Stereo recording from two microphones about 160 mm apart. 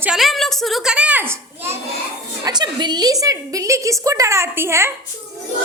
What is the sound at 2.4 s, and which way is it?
A woman's voice, 25° right (ahead or behind).